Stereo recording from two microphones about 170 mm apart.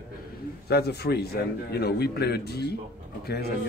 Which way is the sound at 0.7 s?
70° left (ahead or behind).